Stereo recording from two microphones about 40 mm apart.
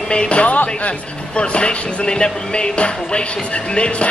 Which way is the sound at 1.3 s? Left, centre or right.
Left.